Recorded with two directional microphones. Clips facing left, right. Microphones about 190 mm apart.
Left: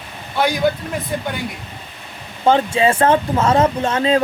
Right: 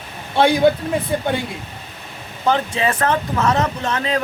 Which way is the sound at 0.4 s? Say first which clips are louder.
Right 3 dB; 25° right (ahead or behind).